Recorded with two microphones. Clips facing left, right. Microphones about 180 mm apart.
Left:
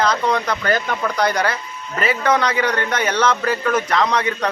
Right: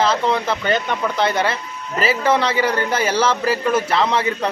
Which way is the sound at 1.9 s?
30° right (ahead or behind).